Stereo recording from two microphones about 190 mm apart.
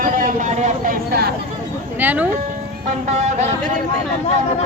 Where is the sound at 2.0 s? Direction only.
10° right (ahead or behind).